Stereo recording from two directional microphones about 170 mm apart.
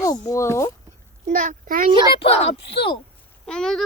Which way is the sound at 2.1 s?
35° left (ahead or behind).